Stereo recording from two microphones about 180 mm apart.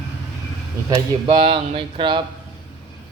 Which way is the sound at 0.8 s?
25° right (ahead or behind).